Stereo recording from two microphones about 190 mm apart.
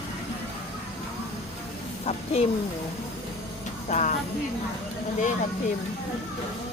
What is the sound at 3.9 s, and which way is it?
Speech, 40° left (ahead or behind).